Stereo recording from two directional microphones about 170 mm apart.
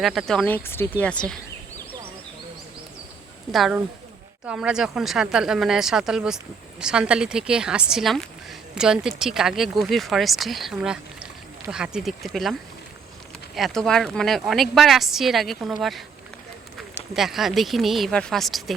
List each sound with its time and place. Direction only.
0.0 s speech: centre (ahead or behind)
3.5 s speech: centre (ahead or behind)
13.6 s speech: 5° left (ahead or behind)